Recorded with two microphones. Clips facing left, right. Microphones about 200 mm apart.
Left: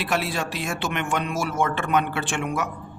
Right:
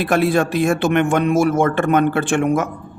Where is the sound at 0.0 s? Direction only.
50° right (ahead or behind).